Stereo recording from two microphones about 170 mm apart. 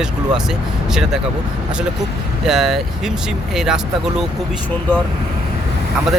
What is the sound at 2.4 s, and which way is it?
Speech, centre (ahead or behind).